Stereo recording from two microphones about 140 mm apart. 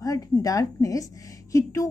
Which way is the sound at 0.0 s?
25° left (ahead or behind).